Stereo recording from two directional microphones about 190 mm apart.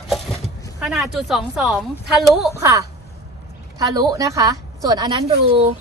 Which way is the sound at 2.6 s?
15° right (ahead or behind).